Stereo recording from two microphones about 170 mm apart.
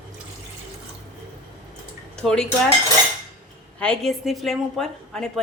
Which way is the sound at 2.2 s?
5° left (ahead or behind).